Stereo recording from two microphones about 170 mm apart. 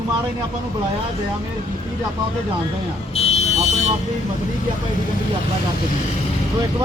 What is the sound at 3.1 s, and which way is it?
Vehicle, 40° left (ahead or behind).